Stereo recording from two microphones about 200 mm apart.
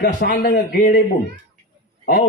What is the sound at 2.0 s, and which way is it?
Speech, 45° left (ahead or behind).